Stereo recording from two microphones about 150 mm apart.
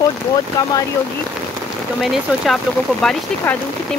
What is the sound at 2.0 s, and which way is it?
Speech, centre (ahead or behind).